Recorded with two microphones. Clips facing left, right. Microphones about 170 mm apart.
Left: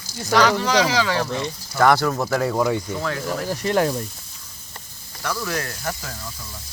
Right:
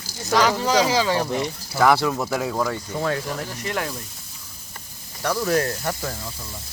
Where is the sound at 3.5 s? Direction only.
35° left (ahead or behind).